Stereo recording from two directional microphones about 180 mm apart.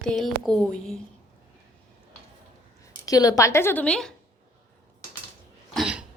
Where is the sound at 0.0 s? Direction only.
Centre (ahead or behind).